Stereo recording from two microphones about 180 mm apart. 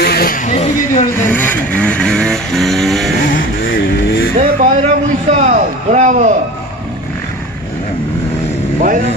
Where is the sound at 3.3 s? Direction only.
55° left (ahead or behind).